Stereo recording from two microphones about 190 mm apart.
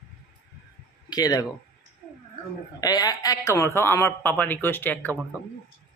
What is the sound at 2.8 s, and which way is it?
A man's voice, 20° left (ahead or behind).